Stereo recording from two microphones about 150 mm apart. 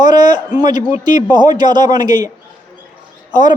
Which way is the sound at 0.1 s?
30° right (ahead or behind).